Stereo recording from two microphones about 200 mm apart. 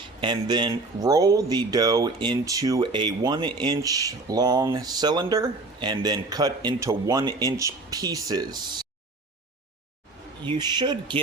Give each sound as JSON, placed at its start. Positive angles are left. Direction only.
{"t": 0.2, "sound": "speech", "side_deg": -25}
{"t": 10.5, "sound": "speech", "side_deg": -20}